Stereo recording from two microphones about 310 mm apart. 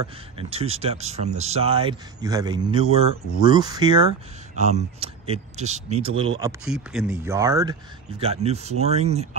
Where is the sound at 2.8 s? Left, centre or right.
Left.